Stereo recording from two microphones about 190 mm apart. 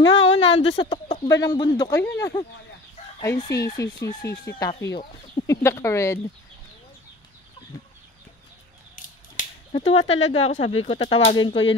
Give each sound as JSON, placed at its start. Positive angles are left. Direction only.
{"t": 0.1, "sound": "speech", "side_deg": 30}
{"t": 8.9, "sound": "a sound", "side_deg": 45}
{"t": 10.0, "sound": "speech", "side_deg": 30}